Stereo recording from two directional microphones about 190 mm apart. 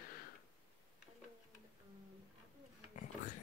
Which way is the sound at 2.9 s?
40° left (ahead or behind).